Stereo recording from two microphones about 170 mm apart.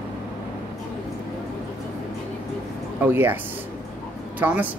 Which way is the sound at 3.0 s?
10° right (ahead or behind).